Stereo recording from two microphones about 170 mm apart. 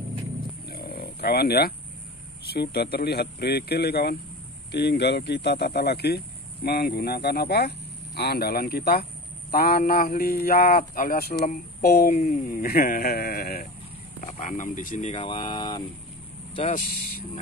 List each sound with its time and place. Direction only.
0.7 s pig: 65° left (ahead or behind)
2.5 s speech: 70° left (ahead or behind)
4.7 s a man's voice: 80° left; by 13.7 s 65° left (ahead or behind)
14.2 s speech: 50° left (ahead or behind)
15.2 s speech: 30° left (ahead or behind)